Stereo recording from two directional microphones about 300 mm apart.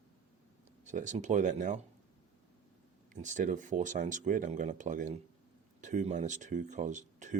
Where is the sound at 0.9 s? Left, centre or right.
Right.